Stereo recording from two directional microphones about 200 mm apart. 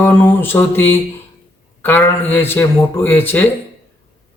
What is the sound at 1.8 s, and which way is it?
Speech, 10° left (ahead or behind).